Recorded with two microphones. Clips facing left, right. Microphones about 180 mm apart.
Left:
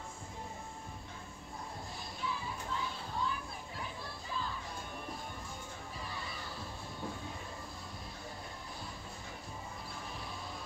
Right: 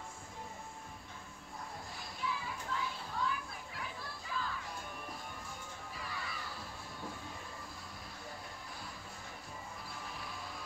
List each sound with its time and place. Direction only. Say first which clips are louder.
2.2 s children playing: even; 30° left (ahead or behind)
5.9 s music: even; 25° left (ahead or behind)